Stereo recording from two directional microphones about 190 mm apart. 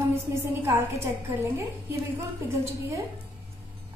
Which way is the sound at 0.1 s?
10° right (ahead or behind).